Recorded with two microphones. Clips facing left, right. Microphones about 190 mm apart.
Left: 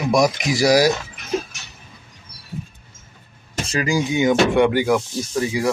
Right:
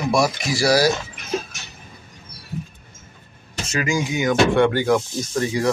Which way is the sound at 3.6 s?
35° left (ahead or behind).